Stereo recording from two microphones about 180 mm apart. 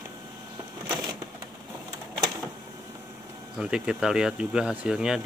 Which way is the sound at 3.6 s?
5° right (ahead or behind).